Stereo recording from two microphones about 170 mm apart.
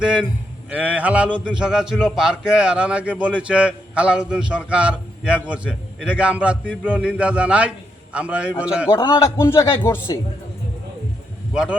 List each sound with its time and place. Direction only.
0.0 s a man's voice: 5° right (ahead or behind)
8.9 s a man's voice: 25° left (ahead or behind)